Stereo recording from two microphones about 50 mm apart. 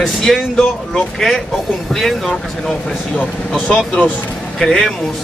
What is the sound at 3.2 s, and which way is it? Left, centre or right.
Speech, left.